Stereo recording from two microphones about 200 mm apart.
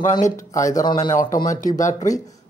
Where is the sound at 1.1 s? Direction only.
40° left (ahead or behind).